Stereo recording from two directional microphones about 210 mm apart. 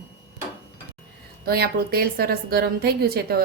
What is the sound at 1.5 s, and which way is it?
A woman's voice, 45° right (ahead or behind).